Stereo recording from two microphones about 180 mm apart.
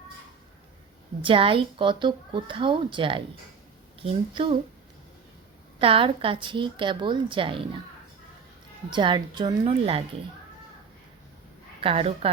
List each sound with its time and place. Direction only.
1.2 s speech: 30° right (ahead or behind)
5.8 s speech: 30° right (ahead or behind)
8.9 s speech: 25° right (ahead or behind)
11.8 s a woman's voice: 30° right (ahead or behind)